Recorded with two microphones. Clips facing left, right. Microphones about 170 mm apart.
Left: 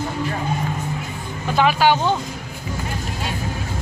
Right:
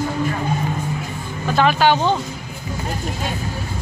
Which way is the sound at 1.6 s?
10° left (ahead or behind).